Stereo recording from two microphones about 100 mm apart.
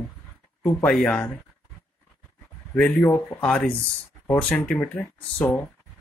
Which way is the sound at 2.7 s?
10° left (ahead or behind).